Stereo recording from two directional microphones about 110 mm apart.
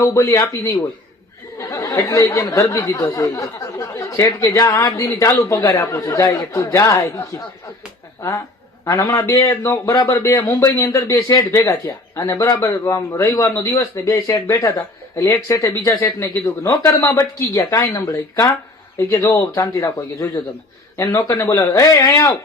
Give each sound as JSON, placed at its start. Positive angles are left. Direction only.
{"t": 0.0, "sound": "speech", "side_deg": 35}
{"t": 0.3, "sound": "speech", "side_deg": 20}
{"t": 0.6, "sound": "speech", "side_deg": 30}
{"t": 8.8, "sound": "a man's voice", "side_deg": 30}